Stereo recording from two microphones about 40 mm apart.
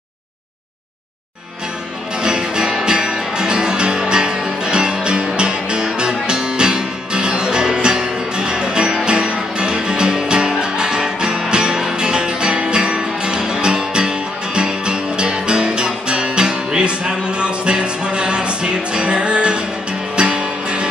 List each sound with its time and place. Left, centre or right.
2.2 s music: centre